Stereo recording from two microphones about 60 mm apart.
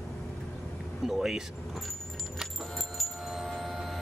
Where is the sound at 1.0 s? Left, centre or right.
Centre.